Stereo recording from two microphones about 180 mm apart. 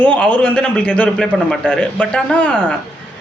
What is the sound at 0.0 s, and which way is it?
A man's voice, 10° left (ahead or behind).